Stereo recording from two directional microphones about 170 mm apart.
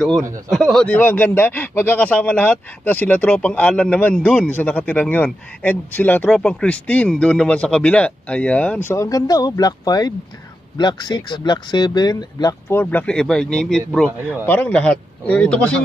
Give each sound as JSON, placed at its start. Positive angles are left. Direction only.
{"t": 0.5, "sound": "speech", "side_deg": 5}